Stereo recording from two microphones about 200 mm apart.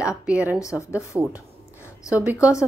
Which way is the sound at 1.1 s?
10° right (ahead or behind).